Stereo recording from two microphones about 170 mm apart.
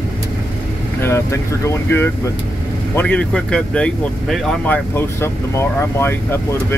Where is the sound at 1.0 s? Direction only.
15° left (ahead or behind).